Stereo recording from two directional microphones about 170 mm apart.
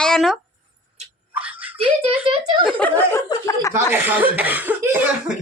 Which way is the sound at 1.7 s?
35° right (ahead or behind).